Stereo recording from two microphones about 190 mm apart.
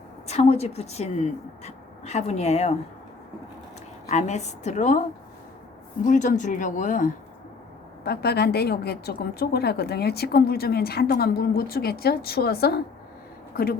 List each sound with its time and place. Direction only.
0.3 s speech: 35° left (ahead or behind)
4.1 s speech: 35° left (ahead or behind)
6.0 s a woman's voice: 40° left (ahead or behind)
8.0 s a woman's voice: 55° left (ahead or behind)